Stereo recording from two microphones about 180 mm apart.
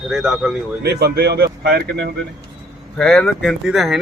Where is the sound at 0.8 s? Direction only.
65° right (ahead or behind).